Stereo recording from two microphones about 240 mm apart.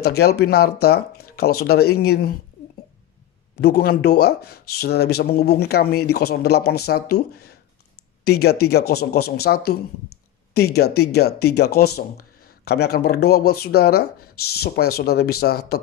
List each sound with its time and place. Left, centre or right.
0.0 s speech: left
3.6 s speech: left